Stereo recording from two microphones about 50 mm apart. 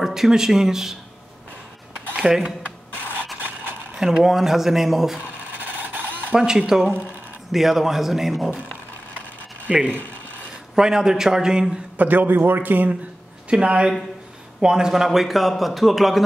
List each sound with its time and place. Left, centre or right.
0.0 s speech: centre
2.3 s speech: centre
3.9 s speech: centre
5.6 s printer: right
6.3 s a man's voice: centre
9.7 s speech: centre
12.0 s a man's voice: right
13.5 s a man's voice: right; by 16.3 s centre